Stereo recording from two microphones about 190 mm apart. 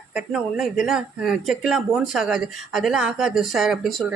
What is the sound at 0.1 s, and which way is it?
Speech, centre (ahead or behind).